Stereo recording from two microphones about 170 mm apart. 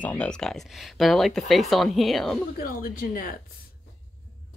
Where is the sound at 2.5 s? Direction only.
60° left (ahead or behind).